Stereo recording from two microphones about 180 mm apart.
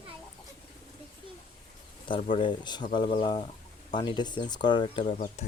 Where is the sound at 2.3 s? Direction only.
25° left (ahead or behind).